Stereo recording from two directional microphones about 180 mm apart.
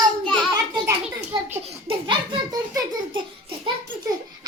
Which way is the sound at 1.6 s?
30° right (ahead or behind).